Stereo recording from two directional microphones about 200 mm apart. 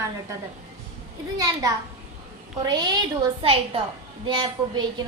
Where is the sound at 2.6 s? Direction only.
20° right (ahead or behind).